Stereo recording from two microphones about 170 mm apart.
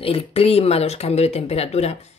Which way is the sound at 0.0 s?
35° left (ahead or behind).